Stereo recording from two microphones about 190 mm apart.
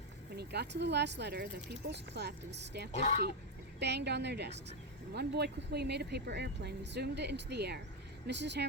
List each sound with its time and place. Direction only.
0.3 s speech: 60° right (ahead or behind)
2.9 s a woman's voice: 35° left (ahead or behind)
3.8 s speech: 65° right (ahead or behind)